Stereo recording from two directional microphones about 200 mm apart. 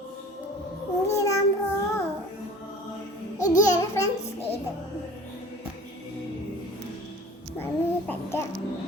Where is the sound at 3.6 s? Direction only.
15° left (ahead or behind).